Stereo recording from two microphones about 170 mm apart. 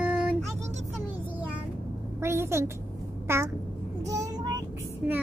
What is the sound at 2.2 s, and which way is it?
A child's voice, 15° right (ahead or behind).